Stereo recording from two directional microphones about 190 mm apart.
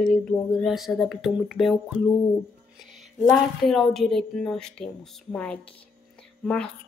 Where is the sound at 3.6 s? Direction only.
Centre (ahead or behind).